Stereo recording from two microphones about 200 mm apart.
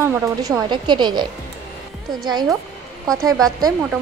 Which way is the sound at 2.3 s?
20° right (ahead or behind).